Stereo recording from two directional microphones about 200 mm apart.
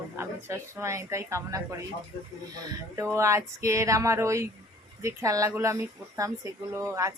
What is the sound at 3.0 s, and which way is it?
Speech, 15° right (ahead or behind).